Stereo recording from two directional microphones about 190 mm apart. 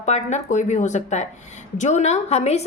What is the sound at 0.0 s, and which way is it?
A woman's voice, 35° left (ahead or behind).